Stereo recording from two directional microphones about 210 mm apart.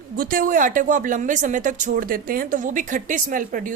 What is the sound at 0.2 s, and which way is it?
Speech, 45° right (ahead or behind).